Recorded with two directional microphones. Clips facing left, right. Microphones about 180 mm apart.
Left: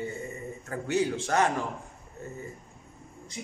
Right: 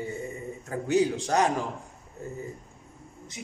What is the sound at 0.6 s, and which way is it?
Speech, 15° right (ahead or behind).